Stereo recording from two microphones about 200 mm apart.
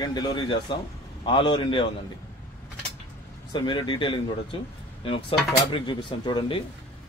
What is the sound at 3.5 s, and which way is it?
Speech, 25° left (ahead or behind).